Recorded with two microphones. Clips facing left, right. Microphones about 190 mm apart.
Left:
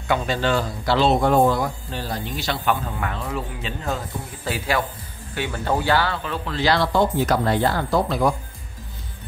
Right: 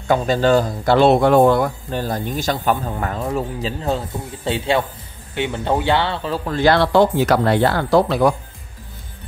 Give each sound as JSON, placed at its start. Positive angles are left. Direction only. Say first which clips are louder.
{"t": 0.1, "sound": "a man's voice", "louder": "right 6 dB", "side_deg": -40}